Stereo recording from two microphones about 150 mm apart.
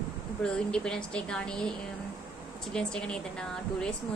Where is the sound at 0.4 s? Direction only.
5° left (ahead or behind).